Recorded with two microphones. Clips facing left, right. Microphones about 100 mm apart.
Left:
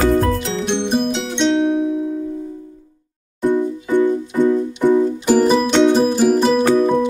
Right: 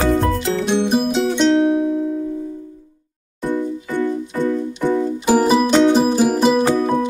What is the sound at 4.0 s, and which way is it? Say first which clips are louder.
Music: left 4 dB; 15° left (ahead or behind).